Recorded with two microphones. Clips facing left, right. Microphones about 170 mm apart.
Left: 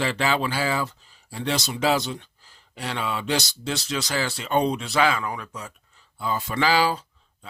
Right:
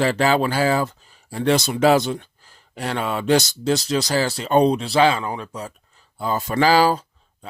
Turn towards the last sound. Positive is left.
turn(degrees=-40)  # may be behind; listen again after turning